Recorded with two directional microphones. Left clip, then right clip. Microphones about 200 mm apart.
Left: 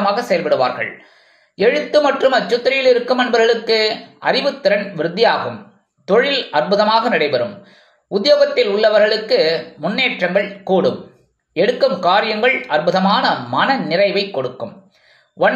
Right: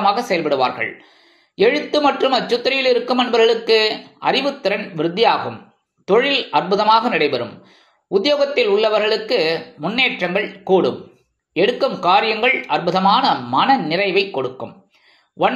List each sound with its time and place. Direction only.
0.0 s speech: 25° right (ahead or behind)